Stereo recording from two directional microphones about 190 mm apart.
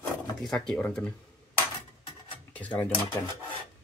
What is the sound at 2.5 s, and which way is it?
Speech, 10° left (ahead or behind).